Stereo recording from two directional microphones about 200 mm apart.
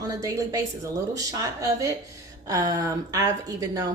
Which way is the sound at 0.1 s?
15° right (ahead or behind).